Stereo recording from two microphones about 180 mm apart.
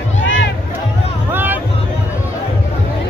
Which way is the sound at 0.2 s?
90° left.